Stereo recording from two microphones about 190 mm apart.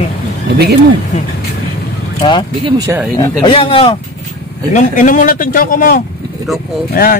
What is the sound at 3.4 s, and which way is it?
Speech, 30° left (ahead or behind).